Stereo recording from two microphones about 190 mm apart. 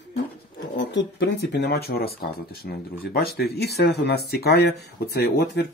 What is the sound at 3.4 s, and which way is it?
Speech, 55° left (ahead or behind).